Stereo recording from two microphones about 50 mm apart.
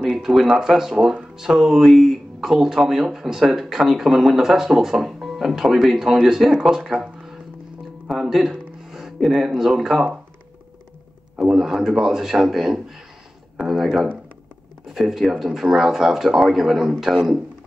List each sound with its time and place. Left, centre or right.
0.6 s speech: centre
8.1 s a sound: centre
11.3 s speech: centre
13.6 s speech: right
14.9 s speech: centre